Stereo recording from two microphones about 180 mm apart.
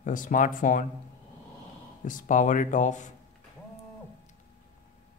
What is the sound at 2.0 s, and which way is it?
Speech, 45° left (ahead or behind).